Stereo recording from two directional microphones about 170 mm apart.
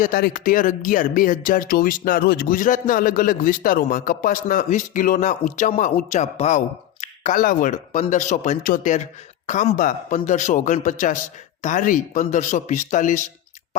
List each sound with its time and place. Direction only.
0.0 s a man's voice: 55° left (ahead or behind)
2.2 s a man's voice: 70° left (ahead or behind); by 13.2 s 50° left (ahead or behind)